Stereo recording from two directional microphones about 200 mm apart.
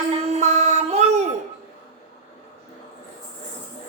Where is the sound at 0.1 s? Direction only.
35° right (ahead or behind).